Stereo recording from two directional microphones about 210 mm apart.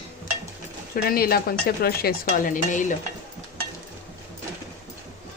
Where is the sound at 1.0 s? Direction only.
45° left (ahead or behind).